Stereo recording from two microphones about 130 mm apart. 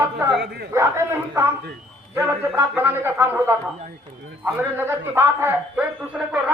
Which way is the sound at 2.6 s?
15° right (ahead or behind).